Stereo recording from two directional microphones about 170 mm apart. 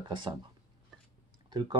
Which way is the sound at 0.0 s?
25° right (ahead or behind).